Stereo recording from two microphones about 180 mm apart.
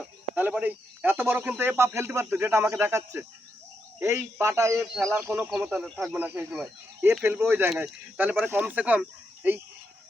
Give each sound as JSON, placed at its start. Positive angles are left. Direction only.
{"t": 0.0, "sound": "speech", "side_deg": -10}
{"t": 4.9, "sound": "speech", "side_deg": -5}